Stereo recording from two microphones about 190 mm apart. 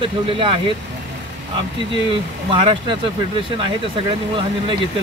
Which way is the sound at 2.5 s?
25° right (ahead or behind).